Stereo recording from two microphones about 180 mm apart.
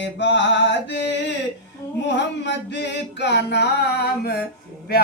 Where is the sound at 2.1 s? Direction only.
70° left (ahead or behind).